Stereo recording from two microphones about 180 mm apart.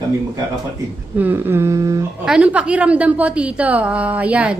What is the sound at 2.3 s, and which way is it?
A woman's voice, 5° right (ahead or behind).